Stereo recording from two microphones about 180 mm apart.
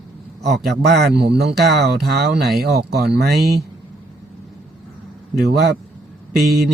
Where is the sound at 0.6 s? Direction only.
65° right (ahead or behind).